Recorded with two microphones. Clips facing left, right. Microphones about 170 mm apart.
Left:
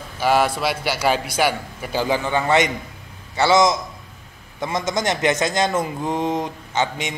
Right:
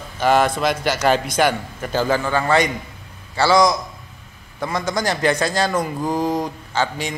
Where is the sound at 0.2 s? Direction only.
10° left (ahead or behind).